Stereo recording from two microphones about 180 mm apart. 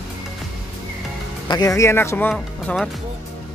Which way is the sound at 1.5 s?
20° left (ahead or behind).